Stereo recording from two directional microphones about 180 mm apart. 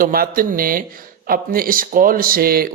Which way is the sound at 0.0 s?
50° right (ahead or behind).